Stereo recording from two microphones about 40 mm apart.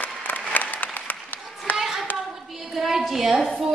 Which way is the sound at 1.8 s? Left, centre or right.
Centre.